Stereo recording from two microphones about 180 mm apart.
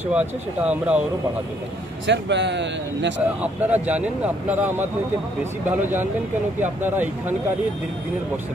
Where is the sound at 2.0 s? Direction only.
80° right.